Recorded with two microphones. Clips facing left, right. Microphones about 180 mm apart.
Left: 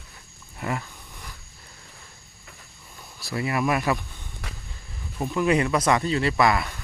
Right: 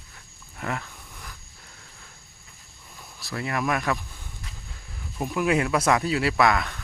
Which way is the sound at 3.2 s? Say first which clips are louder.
Left 3 dB; 5° left (ahead or behind).